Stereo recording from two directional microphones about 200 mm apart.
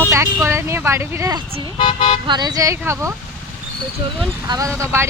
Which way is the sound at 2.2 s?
20° right (ahead or behind).